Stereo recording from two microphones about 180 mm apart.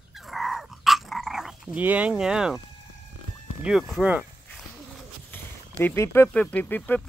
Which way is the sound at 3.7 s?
Centre (ahead or behind).